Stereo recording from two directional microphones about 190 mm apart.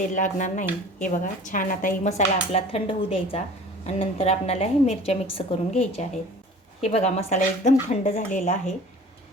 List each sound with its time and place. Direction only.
0.0 s speech: 40° left (ahead or behind)